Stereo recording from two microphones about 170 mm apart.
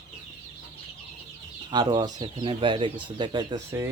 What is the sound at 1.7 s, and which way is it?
Speech, 25° right (ahead or behind).